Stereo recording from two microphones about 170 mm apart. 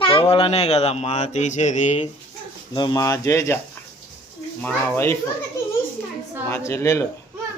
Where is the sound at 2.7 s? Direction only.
25° left (ahead or behind).